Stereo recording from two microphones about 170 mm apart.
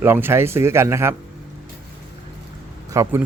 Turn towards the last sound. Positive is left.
turn(degrees=-15)  # may be behind; listen again after turning